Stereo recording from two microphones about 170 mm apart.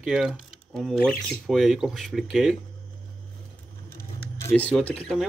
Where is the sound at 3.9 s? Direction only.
15° left (ahead or behind).